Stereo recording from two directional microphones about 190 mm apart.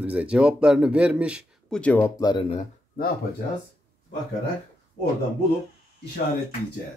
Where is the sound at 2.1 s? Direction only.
20° left (ahead or behind).